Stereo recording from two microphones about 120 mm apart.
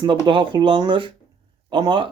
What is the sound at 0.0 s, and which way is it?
A man's voice, 45° right (ahead or behind).